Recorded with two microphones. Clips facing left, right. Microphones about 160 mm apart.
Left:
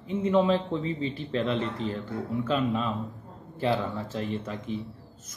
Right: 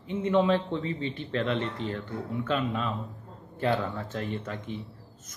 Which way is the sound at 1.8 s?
35° left (ahead or behind).